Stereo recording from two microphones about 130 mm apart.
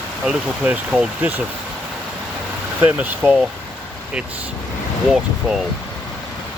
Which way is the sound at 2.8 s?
10° right (ahead or behind).